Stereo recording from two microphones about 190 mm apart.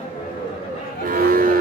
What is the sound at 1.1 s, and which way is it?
Cattle, 50° right (ahead or behind).